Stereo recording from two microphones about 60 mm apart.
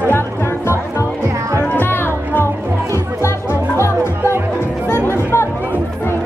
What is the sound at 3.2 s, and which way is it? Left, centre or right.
Music, left.